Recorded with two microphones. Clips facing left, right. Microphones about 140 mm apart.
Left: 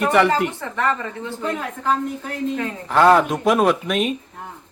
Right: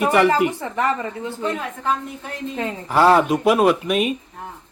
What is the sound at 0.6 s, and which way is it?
Speech, 20° right (ahead or behind).